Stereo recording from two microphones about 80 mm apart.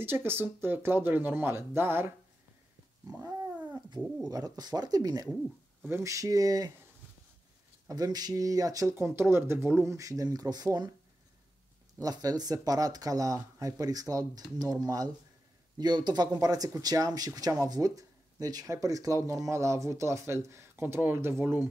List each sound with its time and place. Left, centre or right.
0.0 s speech: right
3.1 s cat: right
4.2 s speech: right
6.0 s speech: right
7.9 s speech: right
8.9 s speech: right
9.9 s speech: right
12.0 s speech: right
15.8 s speech: right